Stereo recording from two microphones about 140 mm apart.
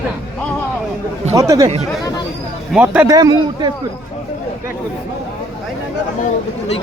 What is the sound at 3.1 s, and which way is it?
Speech, 30° right (ahead or behind).